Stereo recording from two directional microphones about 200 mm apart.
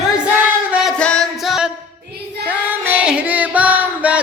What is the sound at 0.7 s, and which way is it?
Music, centre (ahead or behind).